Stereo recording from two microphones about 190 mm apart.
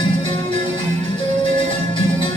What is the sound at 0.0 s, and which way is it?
Music, 25° left (ahead or behind).